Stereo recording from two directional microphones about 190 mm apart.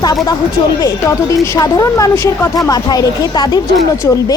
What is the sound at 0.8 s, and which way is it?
A woman's voice, 15° left (ahead or behind).